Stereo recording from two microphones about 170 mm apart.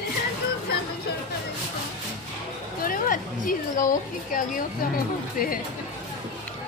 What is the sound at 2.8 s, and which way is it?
A woman's voice, 55° left (ahead or behind).